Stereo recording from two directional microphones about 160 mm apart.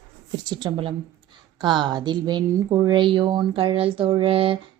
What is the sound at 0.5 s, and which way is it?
A woman's voice, 30° right (ahead or behind).